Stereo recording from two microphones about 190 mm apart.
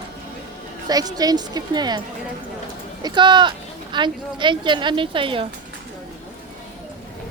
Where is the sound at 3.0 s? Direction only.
25° right (ahead or behind).